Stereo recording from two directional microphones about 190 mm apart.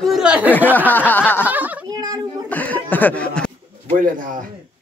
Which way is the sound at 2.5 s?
10° left (ahead or behind).